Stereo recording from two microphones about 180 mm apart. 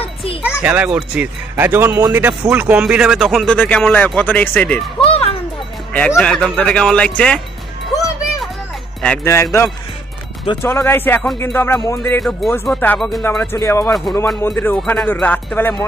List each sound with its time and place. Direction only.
0.0 s children playing: 30° left (ahead or behind)
0.6 s speech: 5° right (ahead or behind)
5.0 s music: 30° left (ahead or behind)
5.9 s speech: 5° left (ahead or behind)
9.0 s speech: 10° left (ahead or behind)
12.2 s speech: centre (ahead or behind)